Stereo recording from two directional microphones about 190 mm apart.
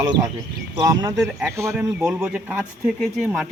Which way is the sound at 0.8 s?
20° right (ahead or behind).